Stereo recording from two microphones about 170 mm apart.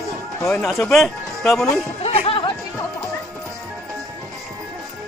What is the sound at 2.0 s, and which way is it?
Music, 35° left (ahead or behind).